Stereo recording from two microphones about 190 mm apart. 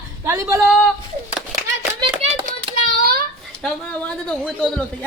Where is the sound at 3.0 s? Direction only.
55° right (ahead or behind).